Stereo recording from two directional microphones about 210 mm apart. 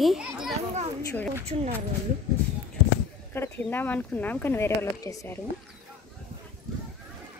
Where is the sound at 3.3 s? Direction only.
10° left (ahead or behind).